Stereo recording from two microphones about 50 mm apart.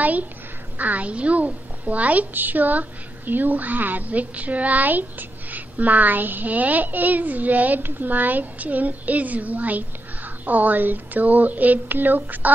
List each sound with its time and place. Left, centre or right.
0.0 s a child's voice: right